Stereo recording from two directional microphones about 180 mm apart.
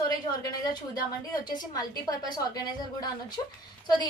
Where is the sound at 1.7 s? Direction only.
20° left (ahead or behind).